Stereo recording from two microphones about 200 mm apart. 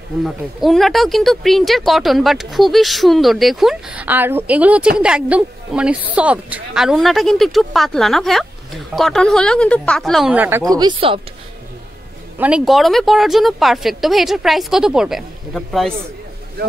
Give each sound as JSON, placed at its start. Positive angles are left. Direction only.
{"t": 0.2, "sound": "speech", "side_deg": 0}
{"t": 12.4, "sound": "speech", "side_deg": -5}